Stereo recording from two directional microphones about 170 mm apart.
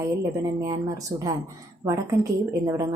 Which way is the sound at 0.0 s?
20° right (ahead or behind).